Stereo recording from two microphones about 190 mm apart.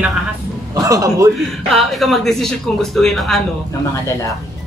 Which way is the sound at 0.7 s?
15° right (ahead or behind).